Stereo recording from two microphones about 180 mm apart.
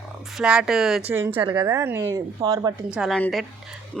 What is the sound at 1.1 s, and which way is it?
Speech, 15° right (ahead or behind).